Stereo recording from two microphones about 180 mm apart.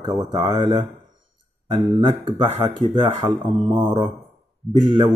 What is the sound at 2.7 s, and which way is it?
Speech, 25° right (ahead or behind).